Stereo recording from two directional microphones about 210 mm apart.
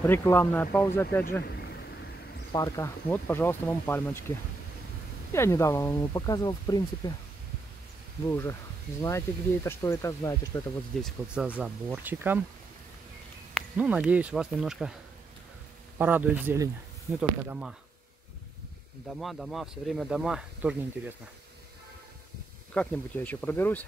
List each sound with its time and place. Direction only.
0.0 s speech: 10° left (ahead or behind)
2.5 s speech: 15° left (ahead or behind)
5.3 s speech: 15° left (ahead or behind)
8.3 s speech: 10° left (ahead or behind)
11.0 s speech: centre (ahead or behind)
13.7 s speech: 5° right (ahead or behind)
16.0 s speech: 10° right (ahead or behind)
19.1 s speech: centre (ahead or behind)
22.8 s speech: 10° left (ahead or behind)